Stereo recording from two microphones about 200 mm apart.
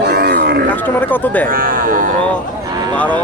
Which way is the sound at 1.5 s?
45° right (ahead or behind).